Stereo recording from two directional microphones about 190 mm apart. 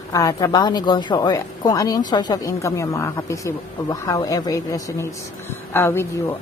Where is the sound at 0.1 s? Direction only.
20° left (ahead or behind).